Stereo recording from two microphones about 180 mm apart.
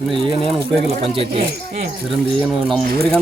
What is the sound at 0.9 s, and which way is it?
Speech, 30° right (ahead or behind).